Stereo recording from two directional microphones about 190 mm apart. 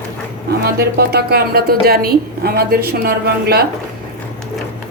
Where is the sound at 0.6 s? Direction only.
55° right (ahead or behind).